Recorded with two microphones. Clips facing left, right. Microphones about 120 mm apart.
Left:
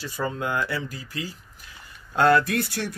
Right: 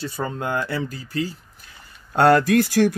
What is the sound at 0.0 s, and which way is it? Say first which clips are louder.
Speech: right 2 dB; 30° right (ahead or behind).